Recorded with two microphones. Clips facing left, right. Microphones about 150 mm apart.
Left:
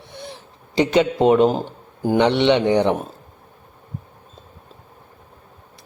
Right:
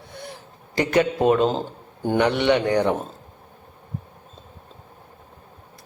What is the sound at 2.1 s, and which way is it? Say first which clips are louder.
Speech: left 3 dB; 20° left (ahead or behind).